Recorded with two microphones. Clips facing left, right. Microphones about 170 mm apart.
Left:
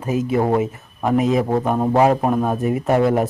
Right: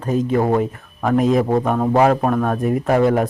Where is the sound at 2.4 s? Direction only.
5° left (ahead or behind).